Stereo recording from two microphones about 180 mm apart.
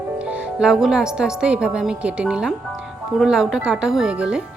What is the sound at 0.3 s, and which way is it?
Speech, 5° right (ahead or behind).